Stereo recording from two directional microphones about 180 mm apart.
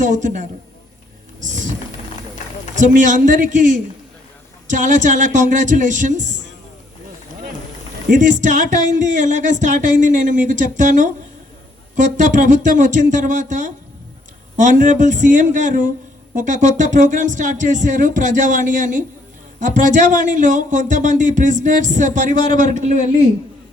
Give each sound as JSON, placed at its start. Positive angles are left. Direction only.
{"t": 0.0, "sound": "speech", "side_deg": -45}
{"t": 2.7, "sound": "speech", "side_deg": -45}
{"t": 8.1, "sound": "speech", "side_deg": -45}